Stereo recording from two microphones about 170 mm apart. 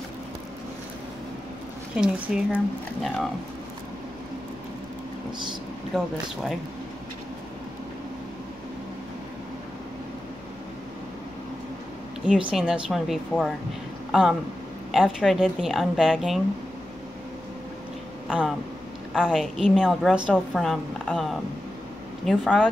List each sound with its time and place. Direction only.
2.0 s a woman's voice: 5° right (ahead or behind)
5.9 s a woman's voice: centre (ahead or behind)
12.3 s a woman's voice: 5° right (ahead or behind)
14.9 s a woman's voice: centre (ahead or behind)
18.3 s a woman's voice: 5° right (ahead or behind)